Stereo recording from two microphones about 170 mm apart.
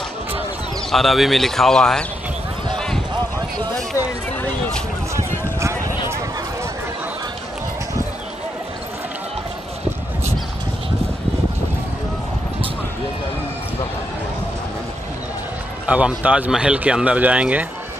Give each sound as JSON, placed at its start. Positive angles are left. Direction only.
{"t": 0.9, "sound": "speech", "side_deg": 0}
{"t": 2.7, "sound": "clip-clop", "side_deg": 5}
{"t": 3.3, "sound": "a sound", "side_deg": -25}
{"t": 15.9, "sound": "speech", "side_deg": -5}